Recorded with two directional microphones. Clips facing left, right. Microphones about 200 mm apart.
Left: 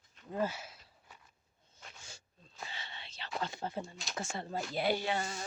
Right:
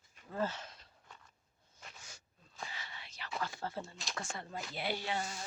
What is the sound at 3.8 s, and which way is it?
Speech, centre (ahead or behind).